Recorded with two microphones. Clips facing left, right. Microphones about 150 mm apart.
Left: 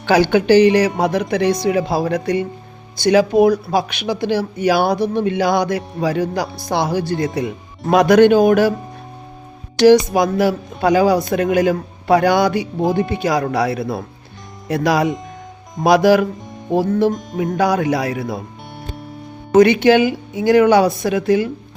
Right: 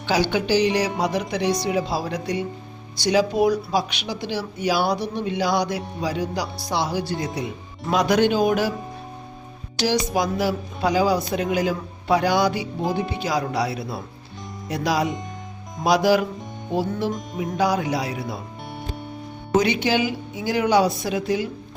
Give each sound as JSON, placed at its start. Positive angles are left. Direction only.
{"t": 0.0, "sound": "speech", "side_deg": 60}
{"t": 9.7, "sound": "speech", "side_deg": 55}
{"t": 19.5, "sound": "speech", "side_deg": 55}